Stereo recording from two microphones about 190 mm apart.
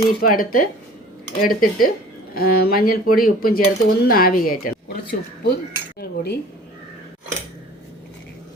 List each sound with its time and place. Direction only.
0.2 s speech: 50° left (ahead or behind)